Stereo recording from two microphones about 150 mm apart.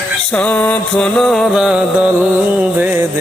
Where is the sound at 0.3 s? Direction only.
10° left (ahead or behind).